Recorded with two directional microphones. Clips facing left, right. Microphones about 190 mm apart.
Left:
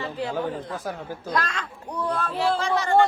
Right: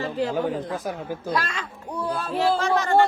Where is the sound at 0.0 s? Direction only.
45° right (ahead or behind).